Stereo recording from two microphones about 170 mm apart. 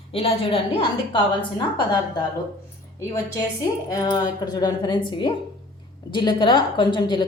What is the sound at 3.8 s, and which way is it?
A woman's voice, 25° left (ahead or behind).